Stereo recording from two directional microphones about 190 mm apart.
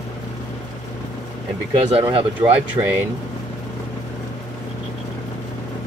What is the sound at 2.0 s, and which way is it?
Speech, 30° right (ahead or behind).